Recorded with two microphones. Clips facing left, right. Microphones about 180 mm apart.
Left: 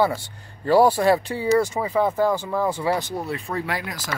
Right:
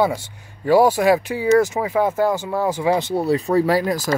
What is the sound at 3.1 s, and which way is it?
Speech, 35° right (ahead or behind).